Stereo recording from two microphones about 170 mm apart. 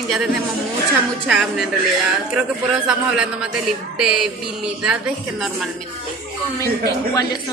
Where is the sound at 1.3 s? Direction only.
5° right (ahead or behind).